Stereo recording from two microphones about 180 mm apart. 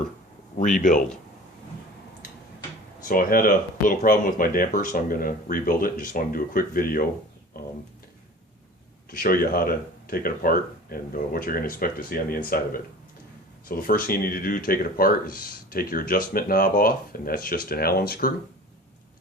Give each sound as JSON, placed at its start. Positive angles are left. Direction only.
{"t": 0.5, "sound": "speech", "side_deg": 45}
{"t": 3.1, "sound": "speech", "side_deg": 50}
{"t": 7.6, "sound": "a sound", "side_deg": 60}
{"t": 9.0, "sound": "speech", "side_deg": 55}